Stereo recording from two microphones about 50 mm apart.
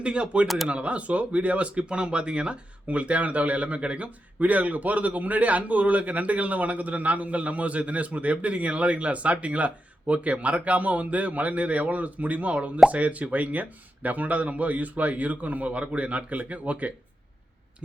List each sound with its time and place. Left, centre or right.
0.0 s speech: right
0.4 s speech: centre
0.7 s speech: right